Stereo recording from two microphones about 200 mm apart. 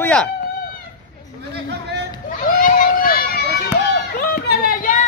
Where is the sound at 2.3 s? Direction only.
40° left (ahead or behind).